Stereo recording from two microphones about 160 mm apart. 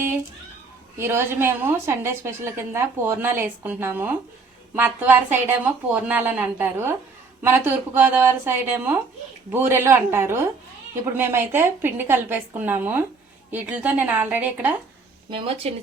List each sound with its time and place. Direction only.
0.9 s a woman's voice: 15° right (ahead or behind)
15.6 s speech: 40° right (ahead or behind)